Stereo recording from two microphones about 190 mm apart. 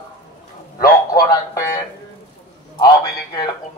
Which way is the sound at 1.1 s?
20° left (ahead or behind).